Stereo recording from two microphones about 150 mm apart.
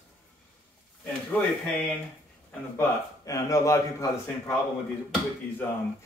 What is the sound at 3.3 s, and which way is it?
Speech, 20° left (ahead or behind).